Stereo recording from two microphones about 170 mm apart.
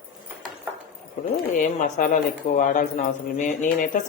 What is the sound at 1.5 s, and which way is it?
Speech, 50° left (ahead or behind).